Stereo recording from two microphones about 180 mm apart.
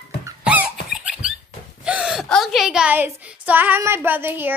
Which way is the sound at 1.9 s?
5° right (ahead or behind).